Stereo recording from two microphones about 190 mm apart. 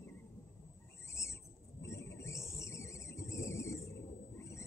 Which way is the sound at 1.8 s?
15° left (ahead or behind).